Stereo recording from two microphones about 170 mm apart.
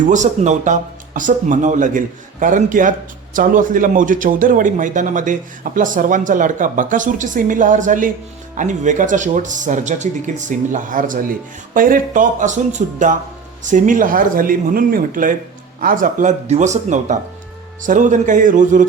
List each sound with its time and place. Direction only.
0.0 s speech: 45° right (ahead or behind)